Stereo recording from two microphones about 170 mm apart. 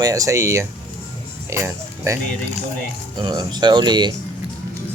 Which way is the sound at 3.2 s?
25° right (ahead or behind).